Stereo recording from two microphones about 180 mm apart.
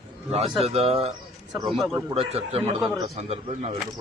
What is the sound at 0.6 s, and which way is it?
Speech, 35° right (ahead or behind).